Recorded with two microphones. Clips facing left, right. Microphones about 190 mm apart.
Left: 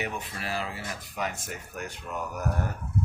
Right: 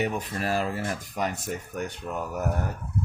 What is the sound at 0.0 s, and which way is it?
Speech, 40° right (ahead or behind).